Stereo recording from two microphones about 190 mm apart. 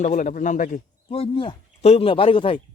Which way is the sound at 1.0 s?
30° left (ahead or behind).